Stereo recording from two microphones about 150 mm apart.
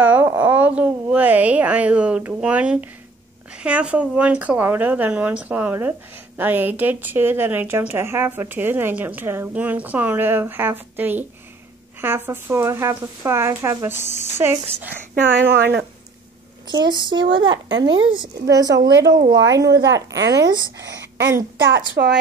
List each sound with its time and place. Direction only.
0.0 s a sound: 10° right (ahead or behind)
3.5 s speech: 10° right (ahead or behind)
15.4 s speech: 90° right
16.6 s speech: 30° right (ahead or behind)
22.0 s speech: 90° right